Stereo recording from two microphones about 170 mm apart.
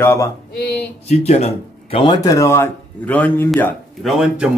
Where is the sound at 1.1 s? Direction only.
40° left (ahead or behind).